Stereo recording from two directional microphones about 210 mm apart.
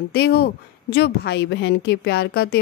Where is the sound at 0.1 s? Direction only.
50° left (ahead or behind).